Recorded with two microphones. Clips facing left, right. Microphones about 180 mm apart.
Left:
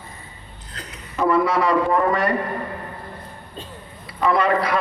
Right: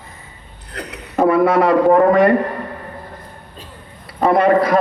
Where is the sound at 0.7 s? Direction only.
65° right (ahead or behind).